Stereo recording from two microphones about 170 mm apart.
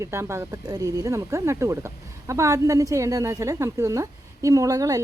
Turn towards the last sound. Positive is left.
turn(degrees=-20)  # may be behind; listen again after turning